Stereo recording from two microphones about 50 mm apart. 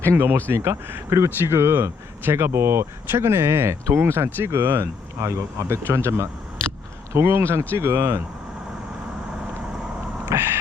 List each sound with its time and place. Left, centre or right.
0.2 s speech: right
0.5 s speech: right
3.1 s speech: right
5.2 s speech: right
10.3 s a sound: right